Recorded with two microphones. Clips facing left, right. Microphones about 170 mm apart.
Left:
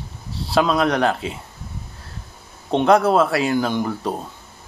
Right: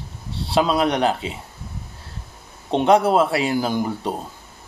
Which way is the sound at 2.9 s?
30° right (ahead or behind).